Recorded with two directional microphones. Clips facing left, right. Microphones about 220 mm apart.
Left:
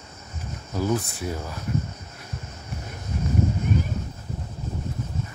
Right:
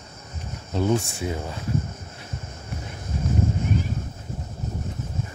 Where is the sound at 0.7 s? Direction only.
25° right (ahead or behind).